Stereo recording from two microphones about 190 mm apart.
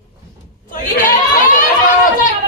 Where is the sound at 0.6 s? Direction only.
45° left (ahead or behind).